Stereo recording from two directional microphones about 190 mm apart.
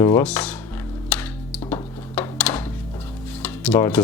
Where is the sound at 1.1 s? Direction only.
5° left (ahead or behind).